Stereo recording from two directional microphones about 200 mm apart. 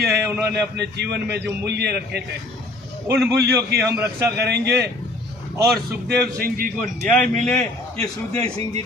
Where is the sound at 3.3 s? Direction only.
55° right (ahead or behind).